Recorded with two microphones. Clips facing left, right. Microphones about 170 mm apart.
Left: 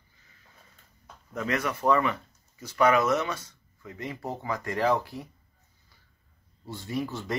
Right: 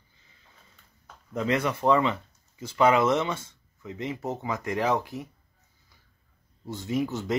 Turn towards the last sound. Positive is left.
turn(degrees=-20)  # may be behind; listen again after turning